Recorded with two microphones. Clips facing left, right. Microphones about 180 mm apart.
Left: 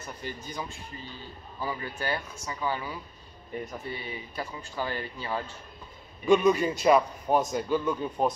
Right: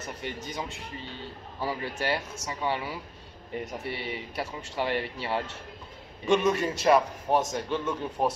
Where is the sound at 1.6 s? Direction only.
30° right (ahead or behind).